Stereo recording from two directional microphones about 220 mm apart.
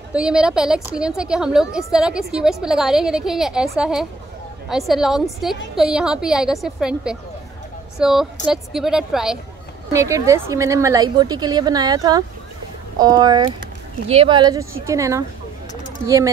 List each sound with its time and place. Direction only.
0.1 s a woman's voice: 5° right (ahead or behind)
9.9 s a woman's voice: 15° right (ahead or behind)